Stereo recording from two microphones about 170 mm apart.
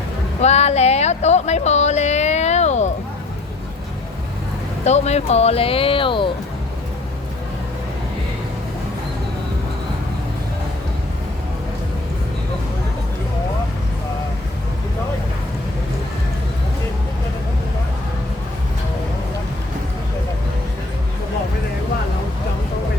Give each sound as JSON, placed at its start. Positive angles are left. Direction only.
{"t": 0.4, "sound": "speech", "side_deg": 40}
{"t": 4.9, "sound": "speech", "side_deg": 40}